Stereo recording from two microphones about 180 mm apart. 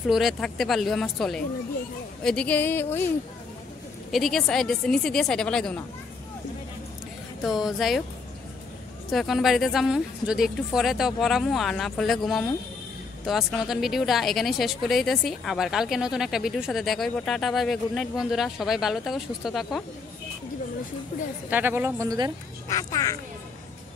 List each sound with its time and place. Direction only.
0.1 s speech: centre (ahead or behind)
4.1 s speech: centre (ahead or behind)
7.4 s speech: centre (ahead or behind)
9.1 s speech: centre (ahead or behind)
21.5 s speech: 10° right (ahead or behind)
22.7 s speech: 15° left (ahead or behind)